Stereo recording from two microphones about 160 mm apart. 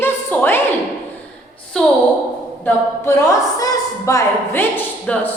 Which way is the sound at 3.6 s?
20° left (ahead or behind).